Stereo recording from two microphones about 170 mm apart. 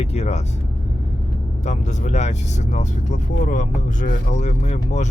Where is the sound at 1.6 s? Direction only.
45° left (ahead or behind).